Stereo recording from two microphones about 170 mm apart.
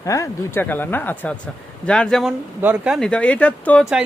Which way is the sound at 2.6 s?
5° right (ahead or behind).